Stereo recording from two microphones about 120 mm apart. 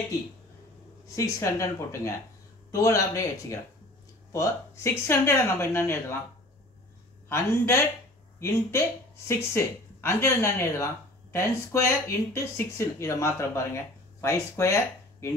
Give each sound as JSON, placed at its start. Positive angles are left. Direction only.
{"t": 1.0, "sound": "speech", "side_deg": 25}
{"t": 7.2, "sound": "speech", "side_deg": 25}